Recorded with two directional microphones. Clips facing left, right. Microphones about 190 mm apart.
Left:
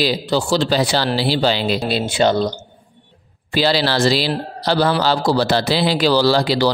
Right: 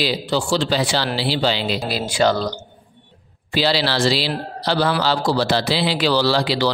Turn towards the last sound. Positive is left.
turn(degrees=40)  # may be behind; listen again after turning